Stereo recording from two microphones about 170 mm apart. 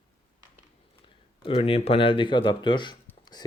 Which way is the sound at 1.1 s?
35° left (ahead or behind).